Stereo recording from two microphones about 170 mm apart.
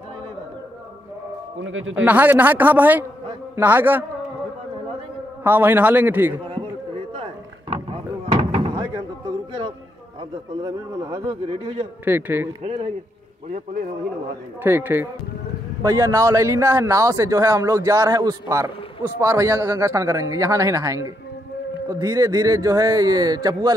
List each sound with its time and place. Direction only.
2.0 s speech: 10° right (ahead or behind)
5.4 s speech: 10° right (ahead or behind)
7.7 s a sound: 35° right (ahead or behind)
10.6 s a man's voice: 25° right (ahead or behind)
12.0 s speech: 10° right (ahead or behind)
14.6 s a man's voice: 10° right (ahead or behind)